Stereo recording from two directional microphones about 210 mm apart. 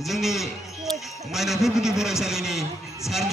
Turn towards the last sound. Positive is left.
turn(degrees=0)  # may be behind; listen again after turning